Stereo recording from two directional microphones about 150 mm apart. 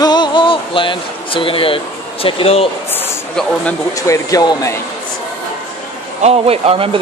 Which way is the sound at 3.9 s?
20° left (ahead or behind).